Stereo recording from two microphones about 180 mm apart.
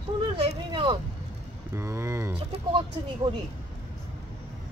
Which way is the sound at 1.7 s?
15° right (ahead or behind).